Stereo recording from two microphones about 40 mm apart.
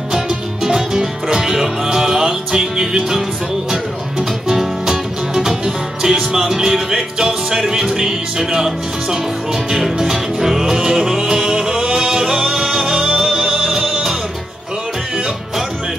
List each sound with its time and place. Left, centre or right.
0.7 s music: centre
4.5 s music: centre